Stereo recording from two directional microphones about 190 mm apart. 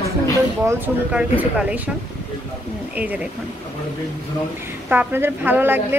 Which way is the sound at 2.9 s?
10° right (ahead or behind).